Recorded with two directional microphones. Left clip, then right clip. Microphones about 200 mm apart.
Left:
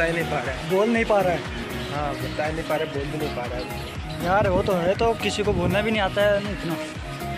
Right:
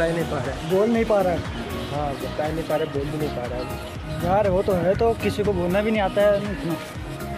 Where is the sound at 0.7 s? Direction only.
Centre (ahead or behind).